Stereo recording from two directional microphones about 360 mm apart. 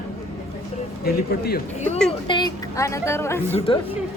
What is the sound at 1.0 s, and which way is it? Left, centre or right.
Speech, left.